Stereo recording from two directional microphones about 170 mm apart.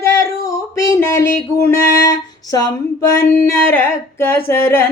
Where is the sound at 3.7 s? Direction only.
15° left (ahead or behind).